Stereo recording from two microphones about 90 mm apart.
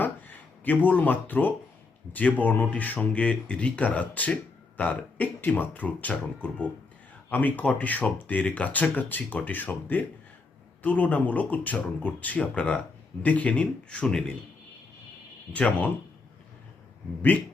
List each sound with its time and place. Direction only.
0.0 s a sound: 20° left (ahead or behind)
2.1 s speech: 15° left (ahead or behind)
15.5 s speech: 15° left (ahead or behind)